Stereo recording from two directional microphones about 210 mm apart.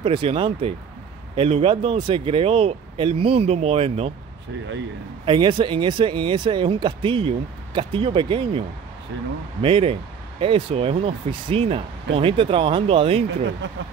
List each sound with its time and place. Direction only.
0.0 s speech: 25° right (ahead or behind)
5.2 s speech: 25° right (ahead or behind)
9.1 s speech: 55° right (ahead or behind)
9.6 s speech: 25° right (ahead or behind)
13.6 s speech: 55° right (ahead or behind)